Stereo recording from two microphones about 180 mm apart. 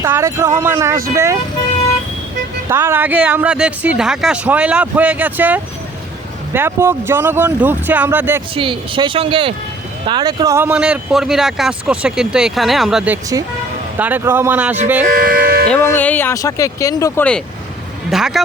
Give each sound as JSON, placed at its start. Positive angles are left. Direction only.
{"t": 0.0, "sound": "speech", "side_deg": -15}
{"t": 2.6, "sound": "speech", "side_deg": -15}
{"t": 8.5, "sound": "speech", "side_deg": -30}
{"t": 15.0, "sound": "speech", "side_deg": -55}
{"t": 15.7, "sound": "speech", "side_deg": 10}
{"t": 18.1, "sound": "speech", "side_deg": 0}